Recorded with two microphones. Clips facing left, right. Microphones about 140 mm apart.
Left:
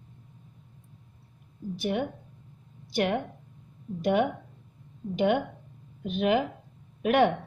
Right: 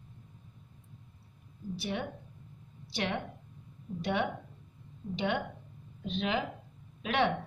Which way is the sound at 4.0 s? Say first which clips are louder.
Left 7 dB; 50° left (ahead or behind).